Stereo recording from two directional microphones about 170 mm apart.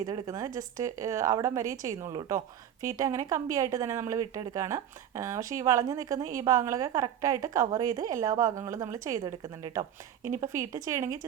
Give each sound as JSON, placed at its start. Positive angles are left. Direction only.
{"t": 0.0, "sound": "a woman's voice", "side_deg": -20}